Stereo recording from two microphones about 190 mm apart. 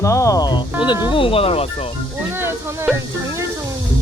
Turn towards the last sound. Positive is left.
turn(degrees=-15)  # may be behind; listen again after turning